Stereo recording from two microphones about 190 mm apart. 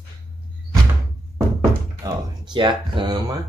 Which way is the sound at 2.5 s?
25° right (ahead or behind).